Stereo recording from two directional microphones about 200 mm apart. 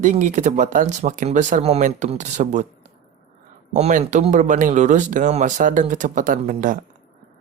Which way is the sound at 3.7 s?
35° right (ahead or behind).